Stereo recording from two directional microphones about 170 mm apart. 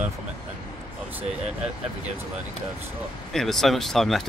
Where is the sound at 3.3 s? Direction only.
Centre (ahead or behind).